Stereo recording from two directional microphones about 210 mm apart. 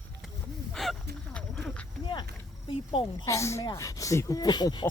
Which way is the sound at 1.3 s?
5° left (ahead or behind).